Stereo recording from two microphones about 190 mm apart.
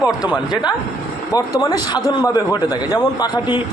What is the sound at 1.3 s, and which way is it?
A man's voice, 20° left (ahead or behind).